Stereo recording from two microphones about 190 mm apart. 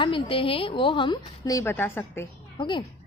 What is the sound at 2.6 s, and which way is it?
Speech, 25° left (ahead or behind).